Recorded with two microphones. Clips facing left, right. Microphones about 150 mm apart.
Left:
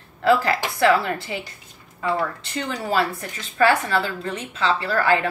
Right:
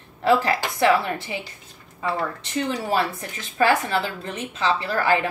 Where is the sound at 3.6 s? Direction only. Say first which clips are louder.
Left 1 dB; 20° right (ahead or behind).